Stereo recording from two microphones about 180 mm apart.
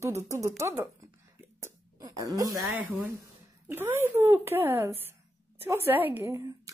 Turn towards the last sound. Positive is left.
turn(degrees=-15)  # may be behind; listen again after turning